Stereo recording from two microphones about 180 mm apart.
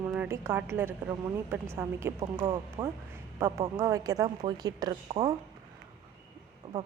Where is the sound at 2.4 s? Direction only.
25° right (ahead or behind).